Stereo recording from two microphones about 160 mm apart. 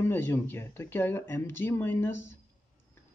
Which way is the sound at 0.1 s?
15° left (ahead or behind).